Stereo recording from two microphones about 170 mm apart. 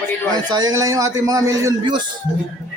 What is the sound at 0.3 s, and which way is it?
A man's voice, 20° right (ahead or behind).